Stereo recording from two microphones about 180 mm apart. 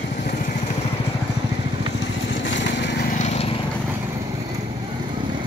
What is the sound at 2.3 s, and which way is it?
Lawn mower, 90° left.